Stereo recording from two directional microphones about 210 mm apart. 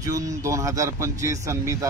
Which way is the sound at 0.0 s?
15° right (ahead or behind).